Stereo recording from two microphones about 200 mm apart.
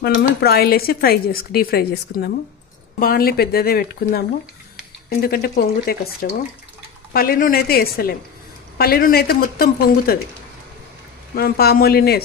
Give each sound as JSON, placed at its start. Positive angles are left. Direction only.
{"t": 0.1, "sound": "speech", "side_deg": 50}
{"t": 5.2, "sound": "speech", "side_deg": 50}
{"t": 11.3, "sound": "speech", "side_deg": 50}